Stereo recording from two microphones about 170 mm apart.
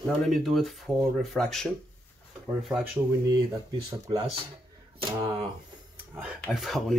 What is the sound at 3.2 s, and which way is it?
Speech, 20° right (ahead or behind).